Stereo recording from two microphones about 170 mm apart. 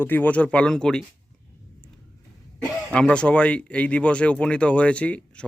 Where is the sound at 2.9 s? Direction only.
5° left (ahead or behind).